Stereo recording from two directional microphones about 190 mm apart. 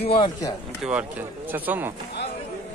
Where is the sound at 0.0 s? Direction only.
25° left (ahead or behind).